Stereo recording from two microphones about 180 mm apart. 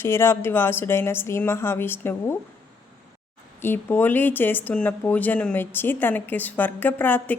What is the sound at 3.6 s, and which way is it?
Speech, 10° left (ahead or behind).